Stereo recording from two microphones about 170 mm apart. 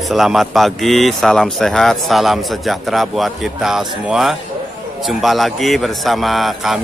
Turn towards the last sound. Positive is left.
turn(degrees=0)  # may be behind; listen again after turning